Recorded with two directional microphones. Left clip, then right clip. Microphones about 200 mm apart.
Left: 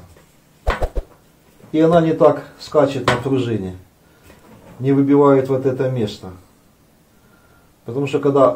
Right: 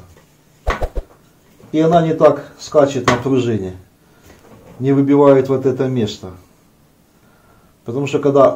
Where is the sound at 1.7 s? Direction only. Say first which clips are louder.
Right 1 dB; 25° right (ahead or behind).